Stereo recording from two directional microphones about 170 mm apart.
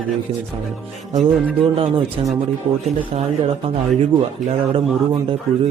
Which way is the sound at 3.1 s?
35° right (ahead or behind).